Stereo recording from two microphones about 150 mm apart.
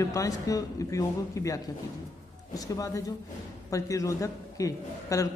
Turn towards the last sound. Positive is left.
turn(degrees=20)  # may be behind; listen again after turning